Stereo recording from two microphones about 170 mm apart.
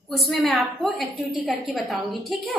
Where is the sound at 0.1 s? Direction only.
Centre (ahead or behind).